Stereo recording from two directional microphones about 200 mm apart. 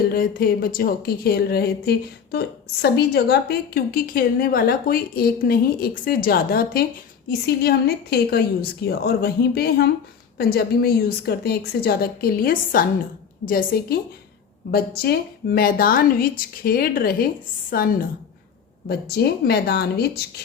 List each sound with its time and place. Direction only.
0.1 s speech: 45° left (ahead or behind)